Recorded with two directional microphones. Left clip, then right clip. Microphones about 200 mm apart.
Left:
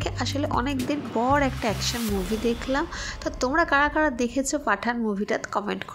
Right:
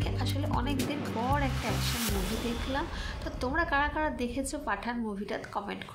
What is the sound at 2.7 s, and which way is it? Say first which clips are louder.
A woman's voice: left 7 dB; 40° left (ahead or behind).